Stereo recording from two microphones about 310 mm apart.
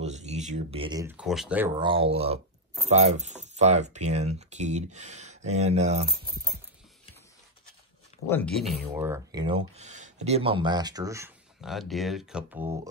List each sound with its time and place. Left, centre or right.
0.0 s speech: right; by 1.9 s centre
1.9 s speech: centre
8.3 s speech: centre